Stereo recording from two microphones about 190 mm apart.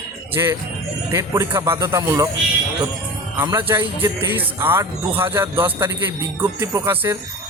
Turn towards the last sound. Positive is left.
turn(degrees=-15)  # may be behind; listen again after turning